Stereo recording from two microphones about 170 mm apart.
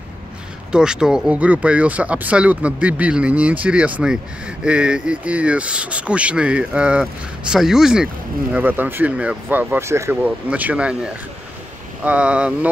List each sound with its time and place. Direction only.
0.7 s speech: 5° right (ahead or behind)
12.0 s speech: 5° right (ahead or behind)